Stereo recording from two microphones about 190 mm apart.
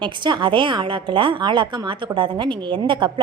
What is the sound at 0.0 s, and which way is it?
A woman's voice, 25° right (ahead or behind).